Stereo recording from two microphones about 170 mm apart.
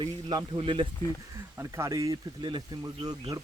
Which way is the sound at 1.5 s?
15° right (ahead or behind).